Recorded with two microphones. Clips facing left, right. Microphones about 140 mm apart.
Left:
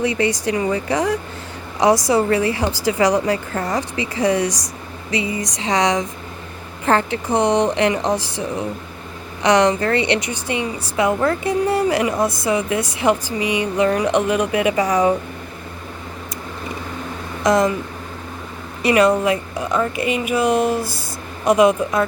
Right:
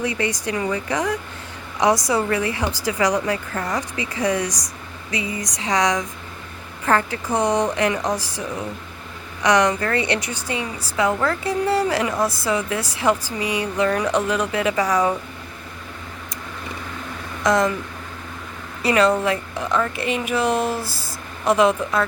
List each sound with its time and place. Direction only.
0.0 s a woman's voice: 30° left (ahead or behind)
17.4 s speech: 20° left (ahead or behind)
18.8 s speech: 15° left (ahead or behind)